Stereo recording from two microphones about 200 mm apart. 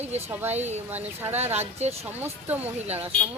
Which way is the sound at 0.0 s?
35° right (ahead or behind).